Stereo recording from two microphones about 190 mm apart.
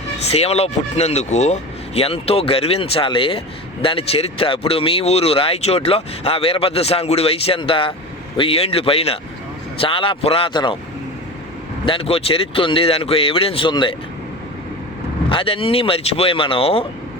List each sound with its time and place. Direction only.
0.3 s speech: 35° left (ahead or behind)
11.9 s speech: 30° left (ahead or behind)
15.3 s speech: 30° left (ahead or behind)